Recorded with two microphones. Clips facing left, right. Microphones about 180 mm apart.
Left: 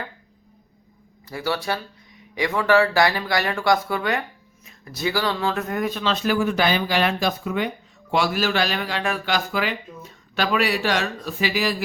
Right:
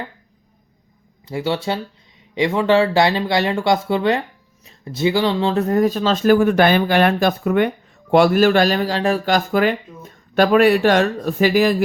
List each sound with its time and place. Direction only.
1.3 s speech: 25° right (ahead or behind); by 11.8 s 50° right (ahead or behind)